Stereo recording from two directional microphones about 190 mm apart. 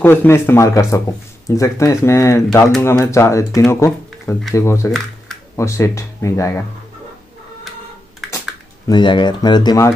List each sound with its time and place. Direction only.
0.0 s speech: 10° left (ahead or behind)
8.8 s speech: 25° left (ahead or behind)